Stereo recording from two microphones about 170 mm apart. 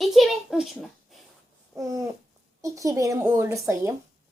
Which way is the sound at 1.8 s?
20° right (ahead or behind).